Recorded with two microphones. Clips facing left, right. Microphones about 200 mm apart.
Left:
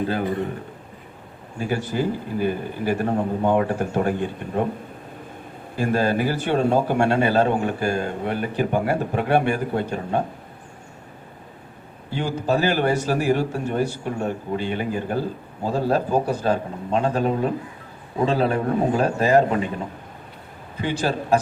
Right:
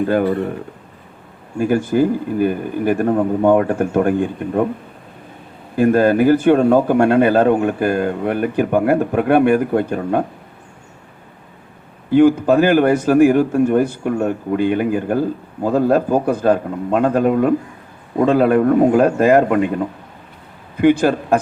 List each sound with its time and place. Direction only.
0.1 s speech: 60° right (ahead or behind)
1.5 s a man's voice: 50° right (ahead or behind)
5.7 s a man's voice: 55° right (ahead or behind)
12.1 s a man's voice: 55° right (ahead or behind)
20.8 s a man's voice: 55° right (ahead or behind)